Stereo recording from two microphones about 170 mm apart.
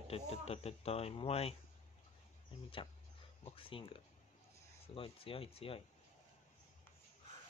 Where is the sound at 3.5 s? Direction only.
30° left (ahead or behind).